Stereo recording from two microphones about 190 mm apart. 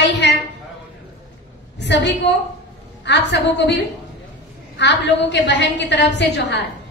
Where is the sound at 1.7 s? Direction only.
70° left (ahead or behind).